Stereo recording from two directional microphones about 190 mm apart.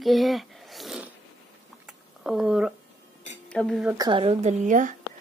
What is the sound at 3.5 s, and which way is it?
Speech, centre (ahead or behind).